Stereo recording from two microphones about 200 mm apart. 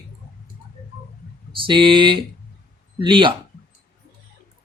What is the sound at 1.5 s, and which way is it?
Speech, 25° right (ahead or behind).